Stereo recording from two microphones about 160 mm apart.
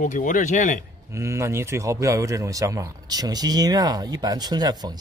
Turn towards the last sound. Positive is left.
turn(degrees=-25)  # may be behind; listen again after turning